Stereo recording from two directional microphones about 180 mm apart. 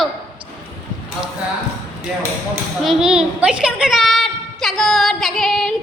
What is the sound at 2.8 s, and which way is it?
A woman's voice, centre (ahead or behind).